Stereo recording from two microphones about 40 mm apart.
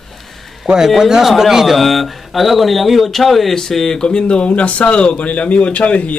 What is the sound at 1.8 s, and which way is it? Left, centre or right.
Speech, centre.